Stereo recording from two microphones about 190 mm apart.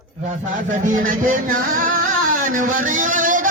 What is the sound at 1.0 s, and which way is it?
Music, 45° right (ahead or behind).